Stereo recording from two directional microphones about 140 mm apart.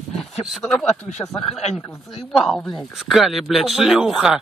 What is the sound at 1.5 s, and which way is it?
Speech, 50° left (ahead or behind).